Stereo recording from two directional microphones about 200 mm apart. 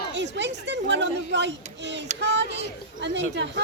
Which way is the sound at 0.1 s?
60° right (ahead or behind).